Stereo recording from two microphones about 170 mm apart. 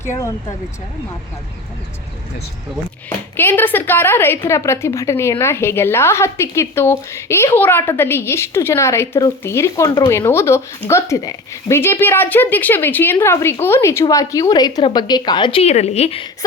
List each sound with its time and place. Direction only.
0.2 s speech: 20° left (ahead or behind)
3.3 s a woman's voice: 10° left (ahead or behind); by 16.3 s 35° left (ahead or behind)